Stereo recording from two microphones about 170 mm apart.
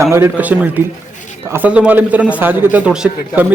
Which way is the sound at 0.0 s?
15° right (ahead or behind).